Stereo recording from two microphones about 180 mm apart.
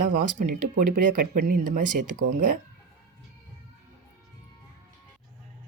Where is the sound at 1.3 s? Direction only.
50° right (ahead or behind).